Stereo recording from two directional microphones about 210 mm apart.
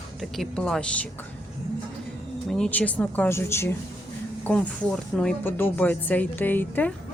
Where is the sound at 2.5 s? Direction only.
5° left (ahead or behind).